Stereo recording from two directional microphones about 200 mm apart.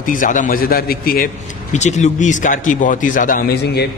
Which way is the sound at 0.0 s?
40° left (ahead or behind).